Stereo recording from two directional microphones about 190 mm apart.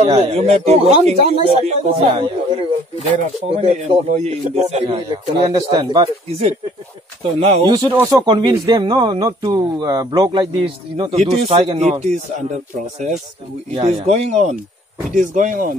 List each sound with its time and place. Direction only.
0.0 s speech: 35° right (ahead or behind)
3.4 s speech: 30° right (ahead or behind)
7.3 s speech: 25° right (ahead or behind)
13.7 s speech: 35° right (ahead or behind)